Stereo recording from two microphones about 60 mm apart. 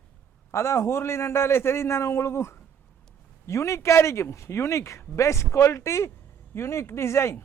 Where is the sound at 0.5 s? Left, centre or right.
Left.